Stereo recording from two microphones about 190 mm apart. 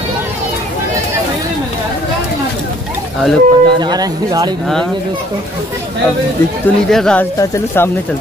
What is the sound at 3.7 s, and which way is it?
Speech, 20° right (ahead or behind).